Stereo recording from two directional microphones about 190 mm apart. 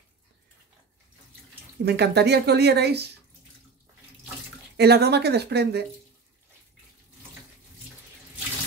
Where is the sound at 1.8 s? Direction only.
60° right (ahead or behind).